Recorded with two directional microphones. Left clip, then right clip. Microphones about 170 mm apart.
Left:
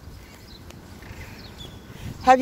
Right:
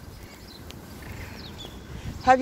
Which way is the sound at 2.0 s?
60° left (ahead or behind).